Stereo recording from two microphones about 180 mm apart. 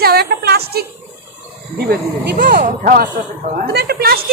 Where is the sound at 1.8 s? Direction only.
55° right (ahead or behind).